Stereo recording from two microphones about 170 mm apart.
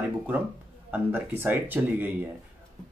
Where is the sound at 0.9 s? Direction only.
10° right (ahead or behind).